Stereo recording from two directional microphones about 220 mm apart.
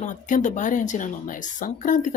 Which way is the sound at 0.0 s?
35° left (ahead or behind).